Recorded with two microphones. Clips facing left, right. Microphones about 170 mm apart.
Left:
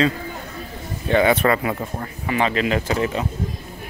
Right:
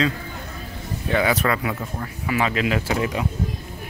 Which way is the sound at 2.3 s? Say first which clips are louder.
Left 2 dB; 5° right (ahead or behind).